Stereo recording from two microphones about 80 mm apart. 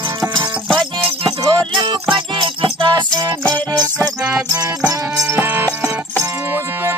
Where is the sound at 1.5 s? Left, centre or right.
Right.